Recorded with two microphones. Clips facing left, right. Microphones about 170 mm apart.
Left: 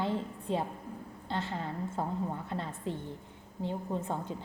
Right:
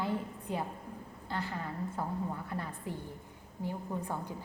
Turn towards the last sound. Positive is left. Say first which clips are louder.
# left 3 dB
turn(degrees=25)  # may be behind; listen again after turning